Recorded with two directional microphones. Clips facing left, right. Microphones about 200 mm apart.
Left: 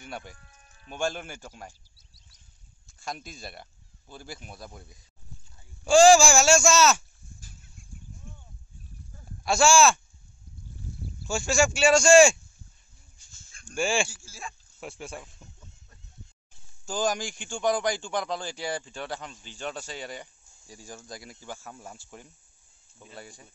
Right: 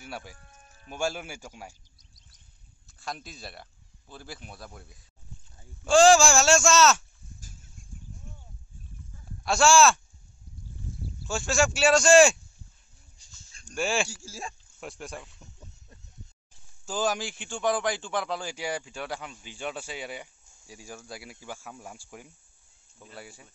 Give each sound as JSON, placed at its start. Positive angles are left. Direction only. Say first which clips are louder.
{"t": 0.0, "sound": "speech", "louder": "even", "side_deg": -5}
{"t": 0.4, "sound": "music", "louder": "right 3 dB", "side_deg": -40}
{"t": 0.8, "sound": "a man's voice", "louder": "even", "side_deg": -10}
{"t": 3.0, "sound": "speech", "louder": "left 1 dB", "side_deg": 0}
{"t": 9.4, "sound": "speech", "louder": "even", "side_deg": 0}
{"t": 11.2, "sound": "speech", "louder": "left 1 dB", "side_deg": 0}
{"t": 13.3, "sound": "a sound", "louder": "left 1 dB", "side_deg": -40}
{"t": 13.7, "sound": "speech", "louder": "left 1 dB", "side_deg": 0}
{"t": 14.0, "sound": "speech", "louder": "right 3 dB", "side_deg": -40}
{"t": 14.8, "sound": "speech", "louder": "even", "side_deg": 0}
{"t": 16.8, "sound": "a man's voice", "louder": "even", "side_deg": -5}